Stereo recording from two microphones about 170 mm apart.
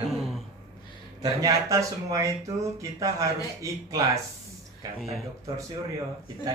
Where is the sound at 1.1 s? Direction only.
20° right (ahead or behind).